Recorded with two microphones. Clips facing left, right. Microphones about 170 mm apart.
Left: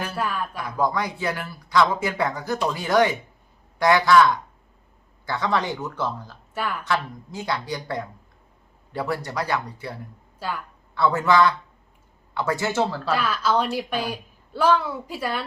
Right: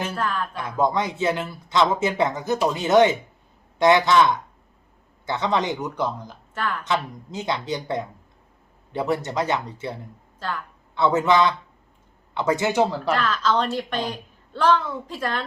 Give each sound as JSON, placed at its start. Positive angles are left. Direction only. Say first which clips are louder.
{"t": 0.2, "sound": "a woman's voice", "louder": "left 1 dB", "side_deg": 10}
{"t": 0.5, "sound": "speech", "louder": "right 3 dB", "side_deg": -20}
{"t": 6.5, "sound": "a woman's voice", "louder": "even", "side_deg": 10}
{"t": 6.8, "sound": "speech", "louder": "right 1 dB", "side_deg": -20}
{"t": 10.4, "sound": "a woman's voice", "louder": "even", "side_deg": 10}
{"t": 10.9, "sound": "speech", "louder": "right 1 dB", "side_deg": -20}
{"t": 13.1, "sound": "a woman's voice", "louder": "left 1 dB", "side_deg": 10}